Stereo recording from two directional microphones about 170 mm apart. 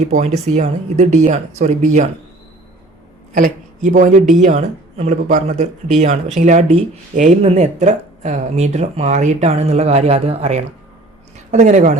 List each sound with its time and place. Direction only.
0.1 s speech: 40° right (ahead or behind)
3.3 s speech: 50° right (ahead or behind)